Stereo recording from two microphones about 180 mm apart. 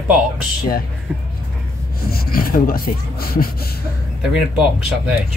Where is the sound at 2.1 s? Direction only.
55° left (ahead or behind).